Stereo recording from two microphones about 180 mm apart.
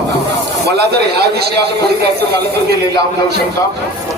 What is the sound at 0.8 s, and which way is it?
Speech, 65° right (ahead or behind).